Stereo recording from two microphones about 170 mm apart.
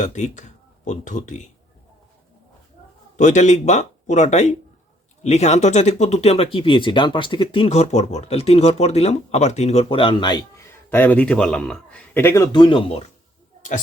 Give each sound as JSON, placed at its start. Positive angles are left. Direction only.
{"t": 0.0, "sound": "speech", "side_deg": 45}
{"t": 3.2, "sound": "speech", "side_deg": 45}
{"t": 10.8, "sound": "a man's voice", "side_deg": 10}
{"t": 13.6, "sound": "speech", "side_deg": 50}